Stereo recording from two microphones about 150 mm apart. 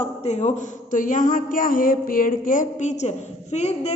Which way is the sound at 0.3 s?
50° left (ahead or behind).